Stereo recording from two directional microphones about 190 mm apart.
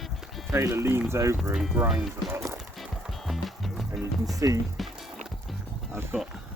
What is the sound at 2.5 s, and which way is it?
Music, centre (ahead or behind).